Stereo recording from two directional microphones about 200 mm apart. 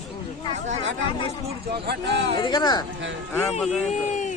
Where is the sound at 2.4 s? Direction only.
20° left (ahead or behind).